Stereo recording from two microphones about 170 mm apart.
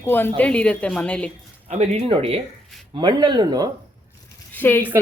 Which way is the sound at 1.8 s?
40° right (ahead or behind).